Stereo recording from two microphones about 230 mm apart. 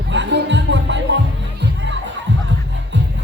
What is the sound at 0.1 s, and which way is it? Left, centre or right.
Music, right.